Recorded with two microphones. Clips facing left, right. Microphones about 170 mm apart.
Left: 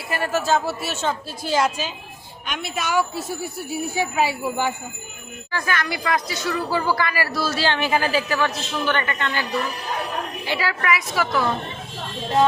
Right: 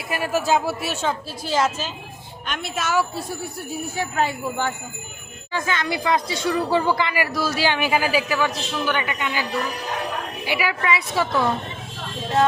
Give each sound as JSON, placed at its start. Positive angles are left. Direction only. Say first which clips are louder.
{"t": 0.1, "sound": "speech", "louder": "even", "side_deg": -10}
{"t": 0.6, "sound": "a woman's voice", "louder": "right 1 dB", "side_deg": 0}
{"t": 5.5, "sound": "a woman's voice", "louder": "right 1 dB", "side_deg": -20}
{"t": 10.8, "sound": "a woman's voice", "louder": "even", "side_deg": -25}